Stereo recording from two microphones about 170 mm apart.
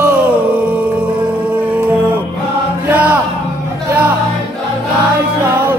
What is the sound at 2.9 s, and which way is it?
Music, 10° right (ahead or behind).